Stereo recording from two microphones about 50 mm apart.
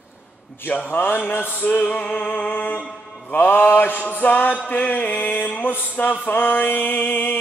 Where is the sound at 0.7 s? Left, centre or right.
Left.